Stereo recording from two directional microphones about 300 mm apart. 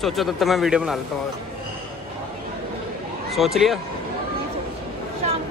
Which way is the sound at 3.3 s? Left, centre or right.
Centre.